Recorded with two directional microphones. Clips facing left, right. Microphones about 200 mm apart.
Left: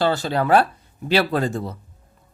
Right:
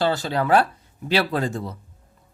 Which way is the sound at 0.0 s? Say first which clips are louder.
Left 2 dB; 55° left (ahead or behind).